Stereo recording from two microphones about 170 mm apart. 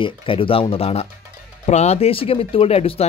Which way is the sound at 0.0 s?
30° left (ahead or behind).